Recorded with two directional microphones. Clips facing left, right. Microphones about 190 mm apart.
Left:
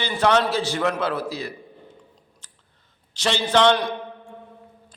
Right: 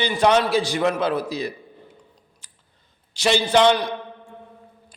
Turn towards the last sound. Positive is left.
turn(degrees=-10)  # may be behind; listen again after turning